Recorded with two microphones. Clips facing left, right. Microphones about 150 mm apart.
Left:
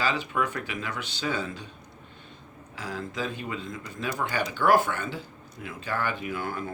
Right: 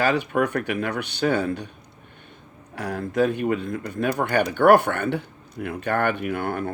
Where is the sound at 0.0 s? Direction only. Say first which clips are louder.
Right 7 dB; 60° right (ahead or behind).